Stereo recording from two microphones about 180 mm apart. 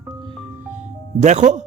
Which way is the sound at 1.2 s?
40° right (ahead or behind).